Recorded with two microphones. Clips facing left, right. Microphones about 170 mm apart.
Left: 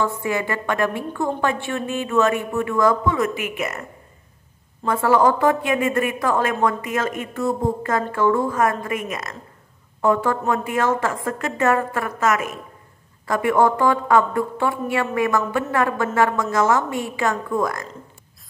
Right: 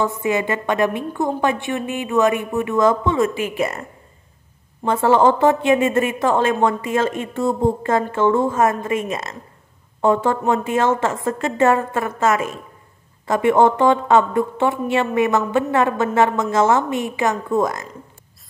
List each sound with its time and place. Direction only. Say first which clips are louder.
0.0 s a woman's voice: right 3 dB; 20° right (ahead or behind)
4.8 s a woman's voice: right 2 dB; 25° right (ahead or behind)